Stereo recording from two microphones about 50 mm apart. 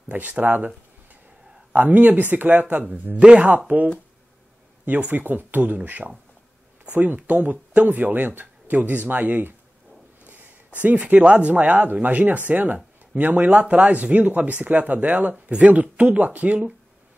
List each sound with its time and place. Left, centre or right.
0.1 s speech: right
1.7 s speech: right
5.1 s speech: right
7.2 s speech: right
10.8 s speech: right